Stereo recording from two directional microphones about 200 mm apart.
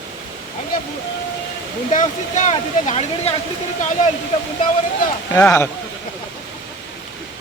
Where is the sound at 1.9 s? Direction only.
35° left (ahead or behind).